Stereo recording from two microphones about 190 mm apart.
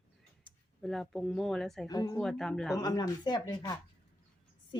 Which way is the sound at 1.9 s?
20° left (ahead or behind).